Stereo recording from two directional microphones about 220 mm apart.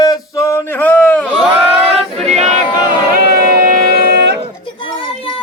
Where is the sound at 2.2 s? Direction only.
30° right (ahead or behind).